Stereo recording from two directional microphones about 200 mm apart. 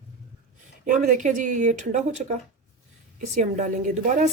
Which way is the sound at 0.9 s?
40° right (ahead or behind).